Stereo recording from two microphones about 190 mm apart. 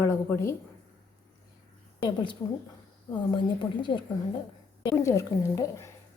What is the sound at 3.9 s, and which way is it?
A woman's voice, 25° left (ahead or behind).